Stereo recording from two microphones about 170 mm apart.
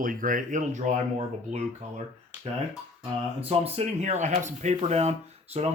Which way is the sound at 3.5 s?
35° right (ahead or behind).